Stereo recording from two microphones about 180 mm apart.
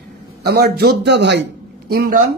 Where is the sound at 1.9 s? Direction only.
60° right (ahead or behind).